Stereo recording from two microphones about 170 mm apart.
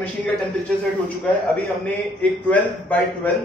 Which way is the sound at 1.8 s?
10° left (ahead or behind).